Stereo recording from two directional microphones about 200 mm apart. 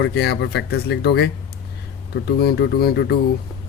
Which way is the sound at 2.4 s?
55° left (ahead or behind).